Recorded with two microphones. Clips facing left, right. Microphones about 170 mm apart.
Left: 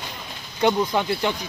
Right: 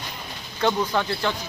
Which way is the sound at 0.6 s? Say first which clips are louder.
Left 2 dB; 10° left (ahead or behind).